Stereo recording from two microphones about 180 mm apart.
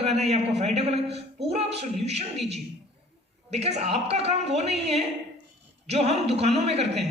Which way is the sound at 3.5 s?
35° right (ahead or behind).